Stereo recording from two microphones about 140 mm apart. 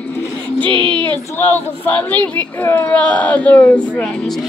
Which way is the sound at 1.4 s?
10° left (ahead or behind).